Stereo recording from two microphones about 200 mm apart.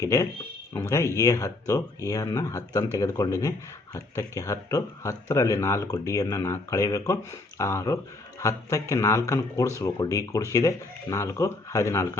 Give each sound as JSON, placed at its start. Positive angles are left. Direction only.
{"t": 0.0, "sound": "speech", "side_deg": 15}